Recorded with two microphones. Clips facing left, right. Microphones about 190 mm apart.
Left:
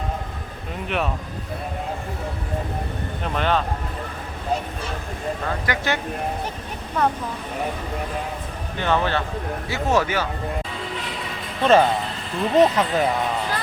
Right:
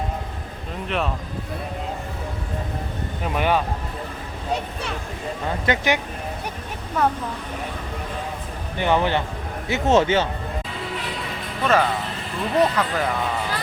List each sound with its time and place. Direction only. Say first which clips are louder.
0.9 s speech: even; centre (ahead or behind)
3.2 s a man's voice: right 1 dB; 10° right (ahead or behind)
5.6 s speech: right 5 dB; 20° right (ahead or behind)
7.0 s speech: even; 5° right (ahead or behind)
8.8 s a man's voice: right 2 dB; 15° right (ahead or behind)
11.6 s speech: left 4 dB; 25° left (ahead or behind)